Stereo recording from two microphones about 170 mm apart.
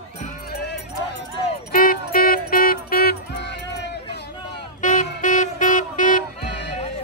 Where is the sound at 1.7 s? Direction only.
55° left (ahead or behind).